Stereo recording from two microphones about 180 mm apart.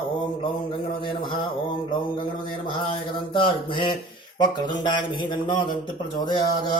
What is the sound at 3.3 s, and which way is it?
Speech, 25° left (ahead or behind).